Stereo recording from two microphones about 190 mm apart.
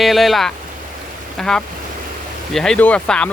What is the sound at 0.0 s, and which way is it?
Speech, centre (ahead or behind).